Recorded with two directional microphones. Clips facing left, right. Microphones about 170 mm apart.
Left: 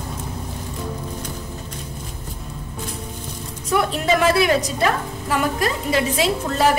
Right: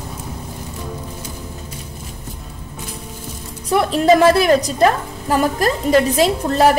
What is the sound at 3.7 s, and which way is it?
A woman's voice, 35° right (ahead or behind).